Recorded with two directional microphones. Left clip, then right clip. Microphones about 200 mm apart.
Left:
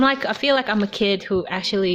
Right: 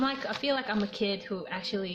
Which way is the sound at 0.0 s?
50° left (ahead or behind).